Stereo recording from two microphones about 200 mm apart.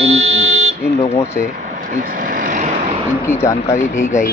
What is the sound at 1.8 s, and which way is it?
Vehicle, 45° right (ahead or behind).